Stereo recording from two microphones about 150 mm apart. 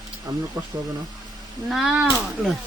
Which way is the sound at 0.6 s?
25° right (ahead or behind).